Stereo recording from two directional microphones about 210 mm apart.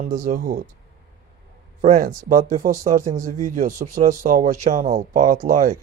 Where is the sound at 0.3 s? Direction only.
45° right (ahead or behind).